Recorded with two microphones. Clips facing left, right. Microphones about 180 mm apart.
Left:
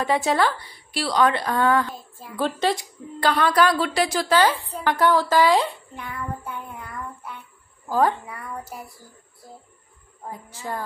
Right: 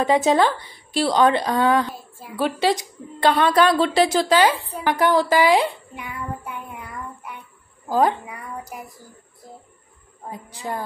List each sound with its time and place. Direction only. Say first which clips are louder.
0.0 s a woman's voice: right 4 dB; 20° right (ahead or behind)
7.9 s a woman's voice: right 2 dB; 15° right (ahead or behind)
10.3 s a woman's voice: right 2 dB; 15° right (ahead or behind)